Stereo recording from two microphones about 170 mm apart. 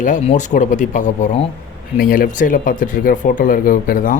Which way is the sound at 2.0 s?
55° left (ahead or behind).